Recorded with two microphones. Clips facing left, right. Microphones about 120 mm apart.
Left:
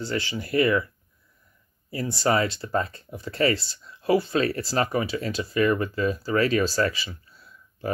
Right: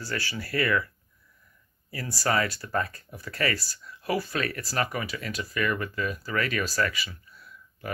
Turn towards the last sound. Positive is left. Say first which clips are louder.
# left 7 dB
turn(degrees=30)  # may be behind; listen again after turning